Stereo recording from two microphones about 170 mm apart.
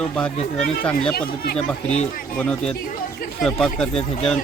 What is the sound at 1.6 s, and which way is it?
Speech, 40° left (ahead or behind).